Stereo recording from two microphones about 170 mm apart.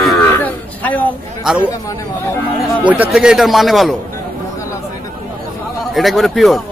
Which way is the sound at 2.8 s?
10° right (ahead or behind).